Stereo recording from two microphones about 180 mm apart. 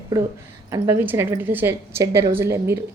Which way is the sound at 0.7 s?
15° right (ahead or behind).